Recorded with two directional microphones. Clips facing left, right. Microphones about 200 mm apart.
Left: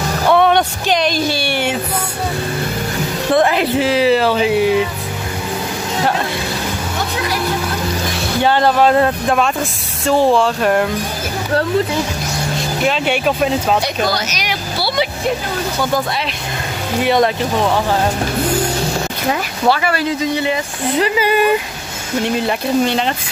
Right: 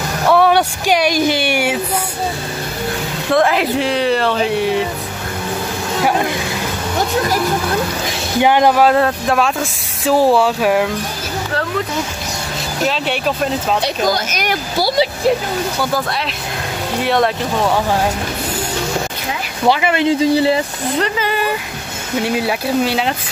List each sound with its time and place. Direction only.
0.3 s a sound: 5° right (ahead or behind)
3.3 s music: centre (ahead or behind)
3.7 s speech: 5° left (ahead or behind)
8.4 s speech: 15° right (ahead or behind)
8.8 s speech: centre (ahead or behind)
12.8 s speech: 5° left (ahead or behind)
14.0 s speech: 50° right (ahead or behind)
17.0 s speech: centre (ahead or behind)
19.7 s speech: 20° right (ahead or behind)
21.0 s speech: 15° left (ahead or behind)
22.2 s speech: 5° right (ahead or behind)